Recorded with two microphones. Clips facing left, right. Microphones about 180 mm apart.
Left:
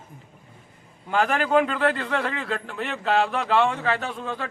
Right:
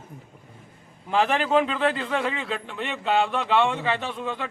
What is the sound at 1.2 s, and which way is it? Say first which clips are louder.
Speech: left 1 dB; 25° right (ahead or behind).